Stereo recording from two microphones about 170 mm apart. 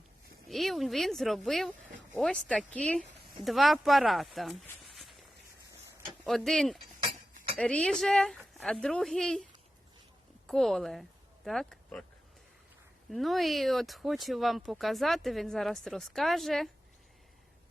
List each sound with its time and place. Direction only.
0.4 s speech: centre (ahead or behind)
4.9 s walk: centre (ahead or behind)
6.2 s a woman's voice: centre (ahead or behind)
13.1 s speech: centre (ahead or behind)